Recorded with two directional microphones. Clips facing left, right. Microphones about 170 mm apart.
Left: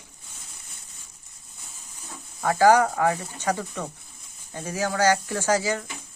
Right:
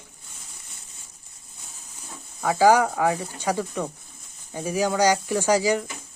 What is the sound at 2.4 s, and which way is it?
Speech, 10° right (ahead or behind).